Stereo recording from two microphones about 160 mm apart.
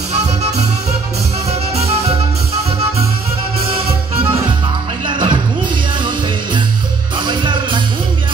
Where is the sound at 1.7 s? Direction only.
40° right (ahead or behind).